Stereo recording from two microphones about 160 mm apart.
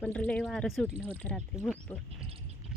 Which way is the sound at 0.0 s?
10° left (ahead or behind).